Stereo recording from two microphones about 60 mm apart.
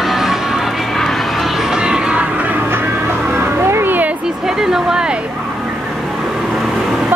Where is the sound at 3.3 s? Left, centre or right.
Right.